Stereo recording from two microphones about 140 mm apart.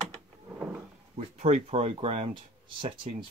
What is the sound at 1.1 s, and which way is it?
Speech, 55° right (ahead or behind).